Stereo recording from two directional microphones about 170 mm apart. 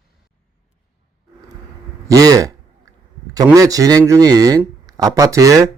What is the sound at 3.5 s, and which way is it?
A man's voice, 20° right (ahead or behind).